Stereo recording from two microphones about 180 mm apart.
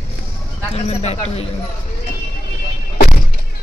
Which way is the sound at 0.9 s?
35° left (ahead or behind).